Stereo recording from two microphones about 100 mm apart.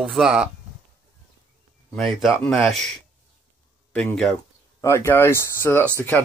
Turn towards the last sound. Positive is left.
turn(degrees=20)  # may be behind; listen again after turning